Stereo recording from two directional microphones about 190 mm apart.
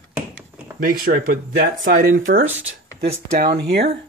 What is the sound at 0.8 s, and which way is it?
Speech, 50° right (ahead or behind).